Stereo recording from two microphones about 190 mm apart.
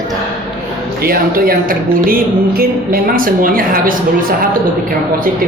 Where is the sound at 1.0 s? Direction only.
50° right (ahead or behind).